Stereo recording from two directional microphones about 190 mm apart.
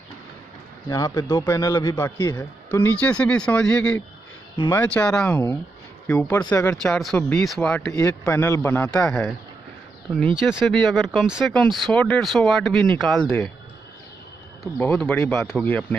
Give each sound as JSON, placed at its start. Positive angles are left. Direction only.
{"t": 0.8, "sound": "a man's voice", "side_deg": 20}
{"t": 7.9, "sound": "a man's voice", "side_deg": 15}
{"t": 15.0, "sound": "a man's voice", "side_deg": 5}